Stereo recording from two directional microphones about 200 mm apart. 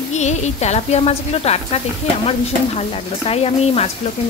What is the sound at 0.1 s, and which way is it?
A woman's voice, 35° left (ahead or behind).